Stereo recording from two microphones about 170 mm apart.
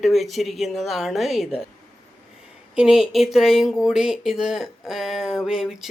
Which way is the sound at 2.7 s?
5° right (ahead or behind).